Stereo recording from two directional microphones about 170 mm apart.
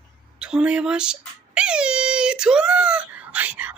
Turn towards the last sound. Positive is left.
turn(degrees=-10)  # may be behind; listen again after turning